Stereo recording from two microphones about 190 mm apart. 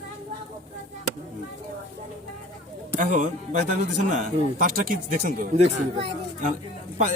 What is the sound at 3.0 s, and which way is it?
Speech, 40° right (ahead or behind).